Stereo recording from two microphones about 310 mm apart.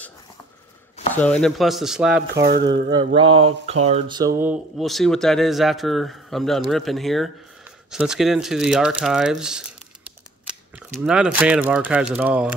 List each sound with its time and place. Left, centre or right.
1.1 s speech: centre
2.3 s speech: right
3.2 s speech: centre
4.4 s speech: centre
11.1 s speech: centre